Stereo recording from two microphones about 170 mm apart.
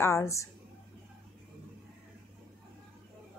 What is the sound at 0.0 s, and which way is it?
Speech, 15° left (ahead or behind).